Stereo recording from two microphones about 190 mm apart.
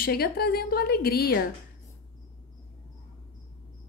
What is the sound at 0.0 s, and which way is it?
A woman's voice, 55° left (ahead or behind).